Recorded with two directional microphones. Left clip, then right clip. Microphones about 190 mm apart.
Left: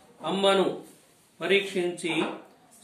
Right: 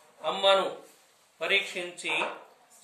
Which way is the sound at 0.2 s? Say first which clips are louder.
Even; centre (ahead or behind).